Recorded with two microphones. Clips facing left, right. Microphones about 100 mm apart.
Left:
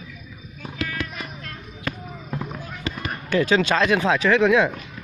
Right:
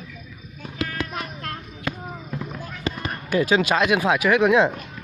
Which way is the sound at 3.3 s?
15° right (ahead or behind).